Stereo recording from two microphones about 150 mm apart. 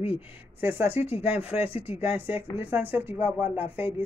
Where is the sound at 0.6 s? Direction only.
15° right (ahead or behind).